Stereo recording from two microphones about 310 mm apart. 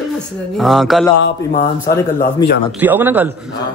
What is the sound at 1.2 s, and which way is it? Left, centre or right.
Speech, left.